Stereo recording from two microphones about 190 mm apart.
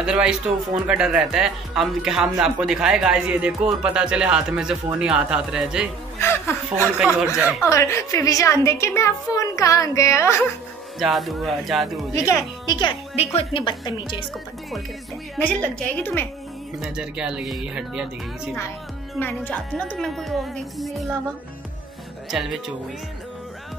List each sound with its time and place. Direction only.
0.0 s speech: 5° right (ahead or behind)
6.1 s a woman's voice: 15° left (ahead or behind)
7.0 s speech: 5° right (ahead or behind)
7.6 s a woman's voice: 15° left (ahead or behind)
11.0 s speech: centre (ahead or behind)
12.1 s a woman's voice: 15° left (ahead or behind)
15.9 s a woman's voice: 10° left (ahead or behind)
16.8 s speech: 5° right (ahead or behind)
19.1 s speech: 10° left (ahead or behind)
22.3 s speech: centre (ahead or behind)